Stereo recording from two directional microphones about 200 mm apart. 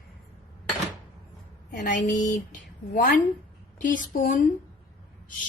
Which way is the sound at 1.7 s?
40° left (ahead or behind).